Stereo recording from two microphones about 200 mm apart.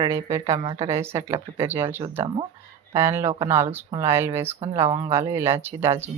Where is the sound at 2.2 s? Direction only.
25° right (ahead or behind).